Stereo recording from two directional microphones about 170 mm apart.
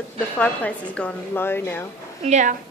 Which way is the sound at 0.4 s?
10° left (ahead or behind).